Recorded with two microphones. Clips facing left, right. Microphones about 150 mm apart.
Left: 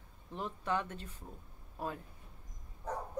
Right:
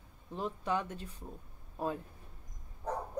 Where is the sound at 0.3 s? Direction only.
15° right (ahead or behind).